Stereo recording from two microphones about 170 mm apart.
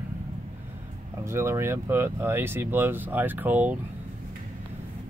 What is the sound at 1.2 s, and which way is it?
Speech, 15° right (ahead or behind).